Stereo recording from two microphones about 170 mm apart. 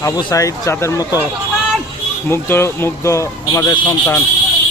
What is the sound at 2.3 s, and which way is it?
Speech, 15° left (ahead or behind).